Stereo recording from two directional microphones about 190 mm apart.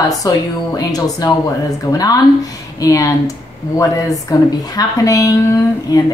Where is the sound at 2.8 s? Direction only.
20° left (ahead or behind).